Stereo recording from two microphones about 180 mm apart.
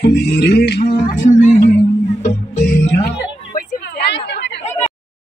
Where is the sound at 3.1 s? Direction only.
65° left (ahead or behind).